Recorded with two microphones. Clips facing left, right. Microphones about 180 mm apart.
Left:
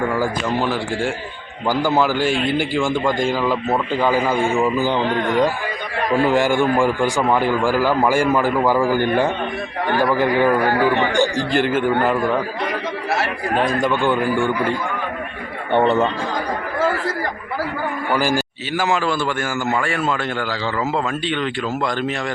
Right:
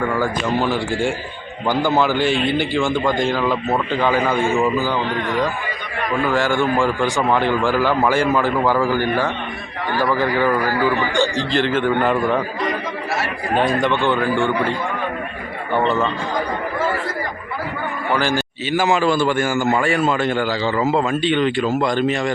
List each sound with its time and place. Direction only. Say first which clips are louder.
0.1 s a man's voice: right 1 dB; 5° left (ahead or behind)
4.7 s a man's voice: left 2 dB; 20° left (ahead or behind)
11.5 s a man's voice: even; 10° left (ahead or behind)
13.5 s speech: right 2 dB; centre (ahead or behind)
14.0 s a man's voice: even; 10° left (ahead or behind)
18.1 s a man's voice: even; 10° left (ahead or behind)